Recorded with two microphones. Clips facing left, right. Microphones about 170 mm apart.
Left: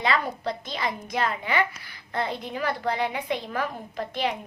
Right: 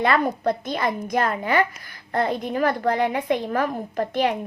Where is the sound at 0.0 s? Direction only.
50° right (ahead or behind).